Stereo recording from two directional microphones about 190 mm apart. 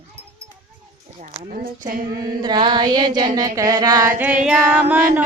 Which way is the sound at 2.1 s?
20° right (ahead or behind).